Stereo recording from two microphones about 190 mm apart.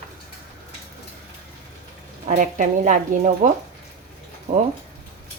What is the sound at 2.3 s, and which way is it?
Speech, 45° right (ahead or behind).